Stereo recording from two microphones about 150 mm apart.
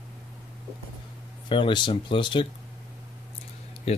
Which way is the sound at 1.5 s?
35° left (ahead or behind).